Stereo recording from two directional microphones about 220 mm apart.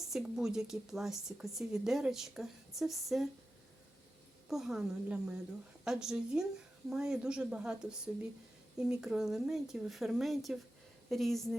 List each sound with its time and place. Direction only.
0.0 s speech: centre (ahead or behind)
4.4 s speech: centre (ahead or behind)